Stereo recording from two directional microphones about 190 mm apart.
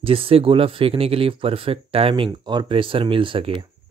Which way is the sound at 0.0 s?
30° right (ahead or behind).